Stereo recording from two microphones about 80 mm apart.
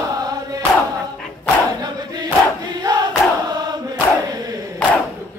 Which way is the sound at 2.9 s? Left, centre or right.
Right.